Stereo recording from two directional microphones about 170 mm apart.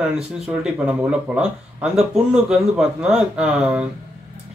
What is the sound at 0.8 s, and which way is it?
Speech, 5° right (ahead or behind).